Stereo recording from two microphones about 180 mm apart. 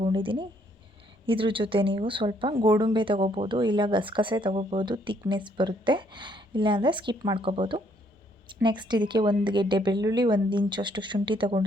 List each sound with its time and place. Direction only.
0.0 s a woman's voice: 30° right (ahead or behind)